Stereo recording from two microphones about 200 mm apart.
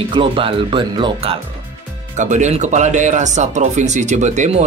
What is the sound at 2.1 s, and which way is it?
Speech, 35° right (ahead or behind).